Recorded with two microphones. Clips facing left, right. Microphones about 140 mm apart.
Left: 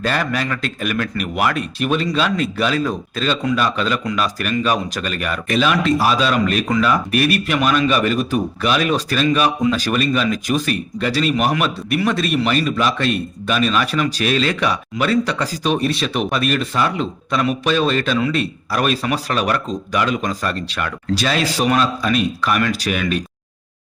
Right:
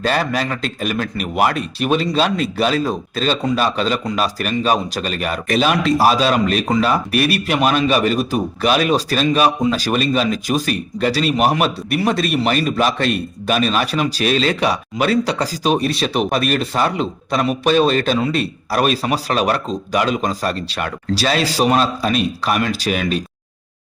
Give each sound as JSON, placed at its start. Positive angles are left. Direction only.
{"t": 0.1, "sound": "speech", "side_deg": -35}